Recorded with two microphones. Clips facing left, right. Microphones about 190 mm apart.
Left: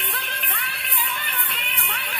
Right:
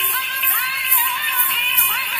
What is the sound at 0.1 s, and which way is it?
Music, 45° left (ahead or behind).